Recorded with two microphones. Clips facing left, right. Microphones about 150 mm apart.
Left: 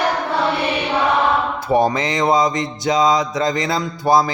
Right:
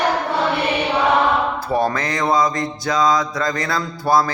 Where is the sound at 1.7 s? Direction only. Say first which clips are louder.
Left 4 dB; 20° left (ahead or behind).